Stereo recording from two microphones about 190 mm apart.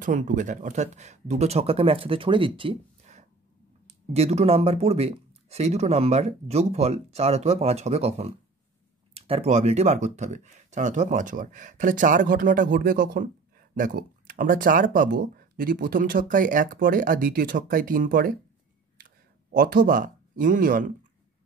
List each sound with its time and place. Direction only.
0.0 s speech: 45° right (ahead or behind)